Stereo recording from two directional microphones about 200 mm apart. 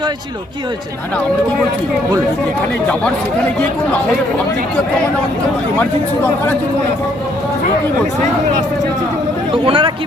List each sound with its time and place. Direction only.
9.6 s speech: 25° right (ahead or behind)